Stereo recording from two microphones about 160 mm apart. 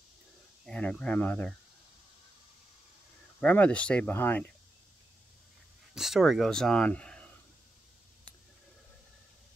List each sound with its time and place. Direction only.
0.7 s speech: 5° left (ahead or behind)
3.3 s speech: 10° left (ahead or behind)
5.9 s speech: centre (ahead or behind)